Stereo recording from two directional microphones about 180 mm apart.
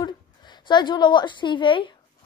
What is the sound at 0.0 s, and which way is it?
A woman's voice, 25° left (ahead or behind).